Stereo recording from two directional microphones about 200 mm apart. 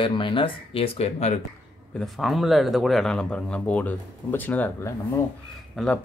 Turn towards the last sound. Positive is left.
turn(degrees=5)  # may be behind; listen again after turning